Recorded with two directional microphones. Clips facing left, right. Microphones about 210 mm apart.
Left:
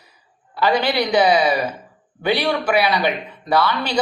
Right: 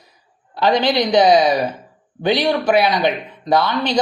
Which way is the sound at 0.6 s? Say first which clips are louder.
Right 2 dB; 20° right (ahead or behind).